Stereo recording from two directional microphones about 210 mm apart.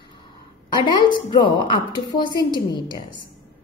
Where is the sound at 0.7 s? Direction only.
25° left (ahead or behind).